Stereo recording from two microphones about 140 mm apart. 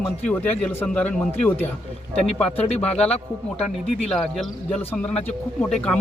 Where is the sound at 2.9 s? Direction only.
10° left (ahead or behind).